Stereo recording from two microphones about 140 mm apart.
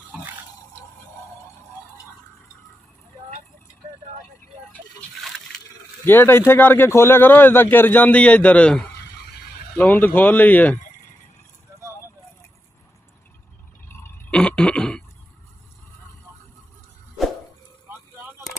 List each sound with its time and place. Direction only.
6.0 s speech: 15° left (ahead or behind)
13.8 s burping: 15° left (ahead or behind)
14.3 s throat clearing: 5° left (ahead or behind)